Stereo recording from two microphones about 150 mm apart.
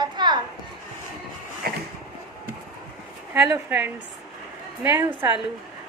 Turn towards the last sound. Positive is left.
turn(degrees=-15)  # may be behind; listen again after turning